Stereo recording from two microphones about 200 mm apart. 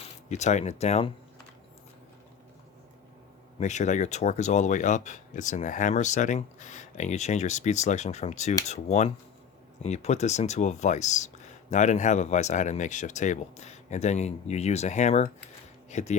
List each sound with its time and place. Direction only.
0.3 s speech: 35° left (ahead or behind)
3.6 s speech: 35° left (ahead or behind)